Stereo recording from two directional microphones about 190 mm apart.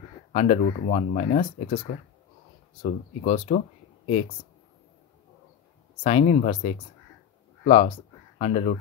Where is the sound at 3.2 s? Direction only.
35° left (ahead or behind).